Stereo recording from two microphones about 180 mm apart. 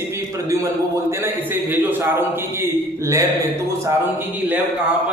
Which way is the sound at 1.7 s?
10° right (ahead or behind).